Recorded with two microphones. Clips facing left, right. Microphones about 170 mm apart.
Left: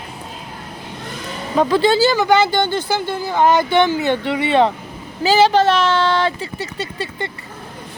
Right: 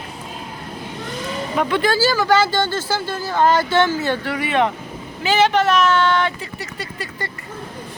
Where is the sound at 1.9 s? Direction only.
20° left (ahead or behind).